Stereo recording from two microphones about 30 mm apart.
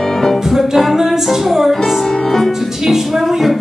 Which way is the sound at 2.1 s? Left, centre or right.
Centre.